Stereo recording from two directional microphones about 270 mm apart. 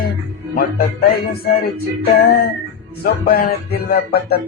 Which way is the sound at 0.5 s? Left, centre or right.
Left.